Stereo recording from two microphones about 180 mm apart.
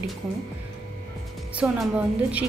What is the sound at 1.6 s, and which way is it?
Speech, 10° right (ahead or behind).